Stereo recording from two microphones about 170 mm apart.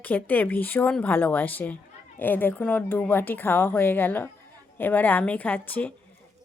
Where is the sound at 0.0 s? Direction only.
10° left (ahead or behind).